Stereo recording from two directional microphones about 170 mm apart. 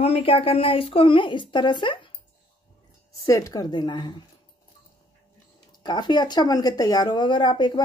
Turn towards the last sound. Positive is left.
turn(degrees=25)  # may be behind; listen again after turning